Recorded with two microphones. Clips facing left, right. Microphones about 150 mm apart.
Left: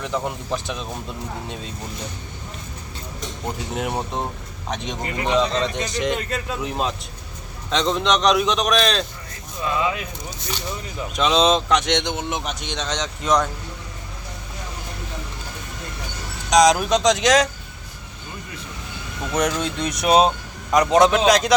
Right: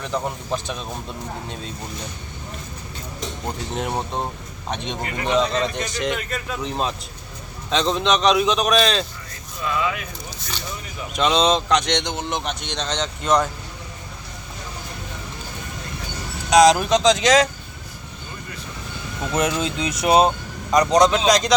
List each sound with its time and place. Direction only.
0.0 s speech: centre (ahead or behind)
3.4 s speech: 5° left (ahead or behind)
5.0 s speech: 25° left (ahead or behind)
5.3 s speech: centre (ahead or behind)
9.6 s speech: 25° left (ahead or behind)
11.1 s speech: centre (ahead or behind)
16.5 s speech: centre (ahead or behind)
19.2 s speech: 5° right (ahead or behind)